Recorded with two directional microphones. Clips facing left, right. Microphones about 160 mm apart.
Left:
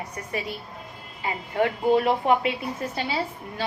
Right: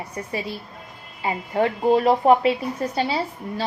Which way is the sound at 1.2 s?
35° right (ahead or behind).